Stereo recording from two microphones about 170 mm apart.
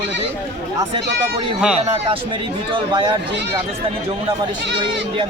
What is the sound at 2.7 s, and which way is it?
Speech, 25° right (ahead or behind).